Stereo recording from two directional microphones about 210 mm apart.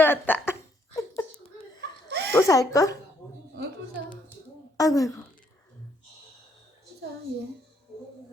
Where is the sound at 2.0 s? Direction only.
50° right (ahead or behind).